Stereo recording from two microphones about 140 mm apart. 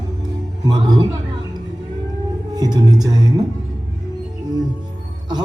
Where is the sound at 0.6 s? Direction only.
35° right (ahead or behind).